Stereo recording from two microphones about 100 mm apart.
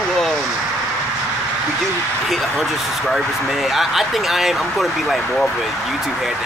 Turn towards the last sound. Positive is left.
turn(degrees=5)  # may be behind; listen again after turning